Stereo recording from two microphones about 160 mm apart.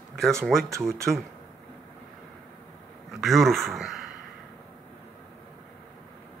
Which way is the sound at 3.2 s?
Centre (ahead or behind).